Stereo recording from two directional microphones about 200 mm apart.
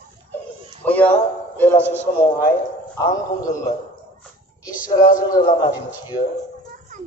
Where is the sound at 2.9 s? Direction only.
15° left (ahead or behind).